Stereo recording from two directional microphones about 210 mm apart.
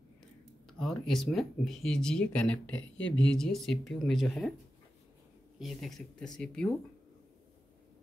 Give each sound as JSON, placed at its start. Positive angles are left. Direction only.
{"t": 0.7, "sound": "speech", "side_deg": 5}
{"t": 2.7, "sound": "speech", "side_deg": 65}
{"t": 3.3, "sound": "speech", "side_deg": 0}
{"t": 5.6, "sound": "speech", "side_deg": 0}